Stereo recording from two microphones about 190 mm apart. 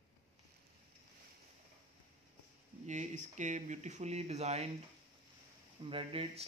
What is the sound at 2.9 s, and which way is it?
Speech, 40° right (ahead or behind).